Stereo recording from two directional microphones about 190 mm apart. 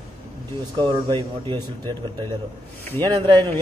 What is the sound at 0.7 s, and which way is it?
A man's voice, 25° right (ahead or behind).